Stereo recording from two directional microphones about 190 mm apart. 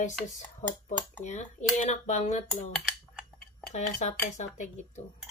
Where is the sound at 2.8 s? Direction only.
5° left (ahead or behind).